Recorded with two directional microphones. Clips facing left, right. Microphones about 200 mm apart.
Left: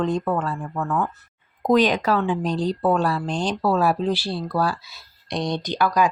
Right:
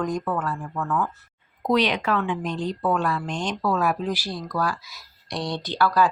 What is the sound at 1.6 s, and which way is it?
A woman's voice, 45° left (ahead or behind).